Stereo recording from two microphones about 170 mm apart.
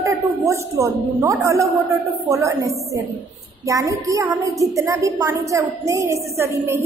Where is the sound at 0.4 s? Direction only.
15° right (ahead or behind).